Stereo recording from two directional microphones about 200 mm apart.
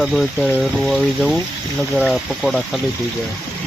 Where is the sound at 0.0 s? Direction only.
Centre (ahead or behind).